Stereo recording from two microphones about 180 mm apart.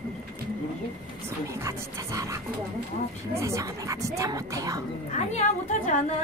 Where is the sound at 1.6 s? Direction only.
15° right (ahead or behind).